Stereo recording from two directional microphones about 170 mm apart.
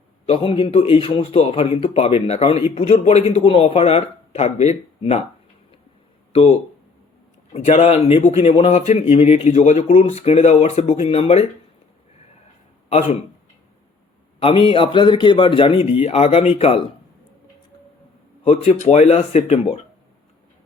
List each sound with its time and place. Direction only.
0.3 s speech: 30° left (ahead or behind)
7.5 s speech: 40° left (ahead or behind)
12.9 s speech: 35° left (ahead or behind)
14.3 s speech: 30° left (ahead or behind)
18.4 s speech: 40° left (ahead or behind)